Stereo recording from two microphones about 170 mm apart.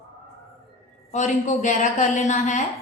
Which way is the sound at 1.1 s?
45° left (ahead or behind).